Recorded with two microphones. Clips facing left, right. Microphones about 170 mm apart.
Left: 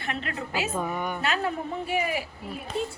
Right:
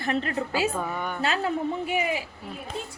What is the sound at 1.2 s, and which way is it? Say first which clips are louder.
Speech: right 5 dB; 25° right (ahead or behind).